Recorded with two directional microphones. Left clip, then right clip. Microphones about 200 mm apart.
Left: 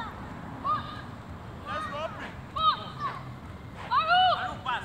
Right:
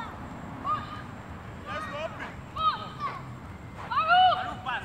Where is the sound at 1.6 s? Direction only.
10° right (ahead or behind).